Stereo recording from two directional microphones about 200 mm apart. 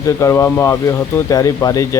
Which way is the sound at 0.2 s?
15° left (ahead or behind).